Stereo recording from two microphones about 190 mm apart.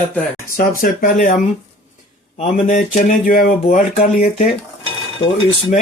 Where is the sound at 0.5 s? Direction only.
50° left (ahead or behind).